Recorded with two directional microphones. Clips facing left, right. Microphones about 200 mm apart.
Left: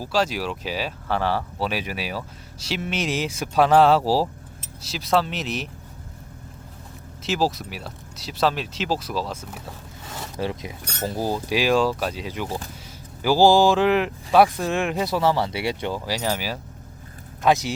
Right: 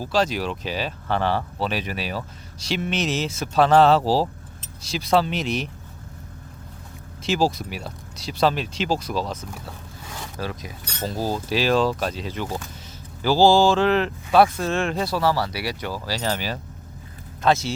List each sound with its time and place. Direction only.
0.0 s speech: 5° left (ahead or behind)
7.2 s speech: centre (ahead or behind)
10.3 s speech: 25° left (ahead or behind)